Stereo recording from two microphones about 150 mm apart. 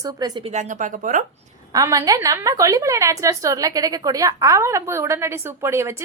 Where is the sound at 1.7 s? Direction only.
25° right (ahead or behind).